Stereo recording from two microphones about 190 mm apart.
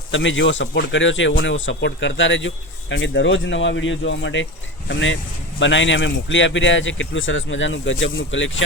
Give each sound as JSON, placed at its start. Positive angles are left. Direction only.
{"t": 0.1, "sound": "speech", "side_deg": 75}